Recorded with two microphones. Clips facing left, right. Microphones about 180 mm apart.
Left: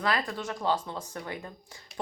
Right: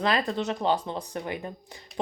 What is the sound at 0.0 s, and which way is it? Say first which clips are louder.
Speech: right 4 dB; 20° right (ahead or behind).